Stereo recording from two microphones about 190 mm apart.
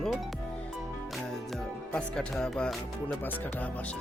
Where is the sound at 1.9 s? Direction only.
5° left (ahead or behind).